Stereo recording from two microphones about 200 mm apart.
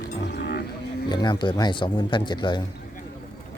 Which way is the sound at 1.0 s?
20° left (ahead or behind).